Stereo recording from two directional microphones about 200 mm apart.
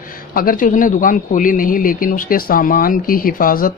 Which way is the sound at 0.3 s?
45° left (ahead or behind).